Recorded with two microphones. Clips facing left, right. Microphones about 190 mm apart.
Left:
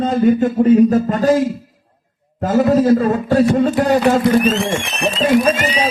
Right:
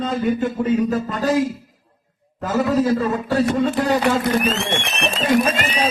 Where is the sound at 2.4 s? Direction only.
45° left (ahead or behind).